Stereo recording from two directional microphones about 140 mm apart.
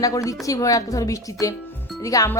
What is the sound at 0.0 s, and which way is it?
Speech, 25° left (ahead or behind).